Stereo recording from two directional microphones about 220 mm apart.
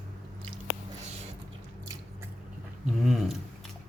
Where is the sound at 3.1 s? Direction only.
Centre (ahead or behind).